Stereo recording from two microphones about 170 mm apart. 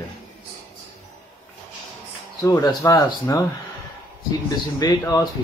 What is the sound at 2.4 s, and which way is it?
Speech, 20° left (ahead or behind).